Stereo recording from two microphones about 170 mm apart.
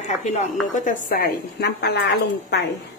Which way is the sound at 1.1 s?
60° left (ahead or behind).